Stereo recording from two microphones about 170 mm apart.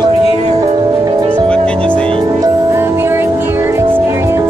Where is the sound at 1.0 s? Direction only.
30° right (ahead or behind).